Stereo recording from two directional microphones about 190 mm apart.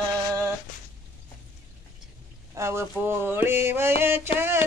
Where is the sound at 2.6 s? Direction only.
15° right (ahead or behind).